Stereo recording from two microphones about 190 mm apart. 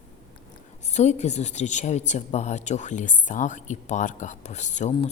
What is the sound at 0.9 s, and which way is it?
Speech, 35° left (ahead or behind).